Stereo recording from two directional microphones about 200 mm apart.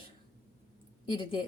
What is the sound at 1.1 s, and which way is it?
Speech, 25° left (ahead or behind).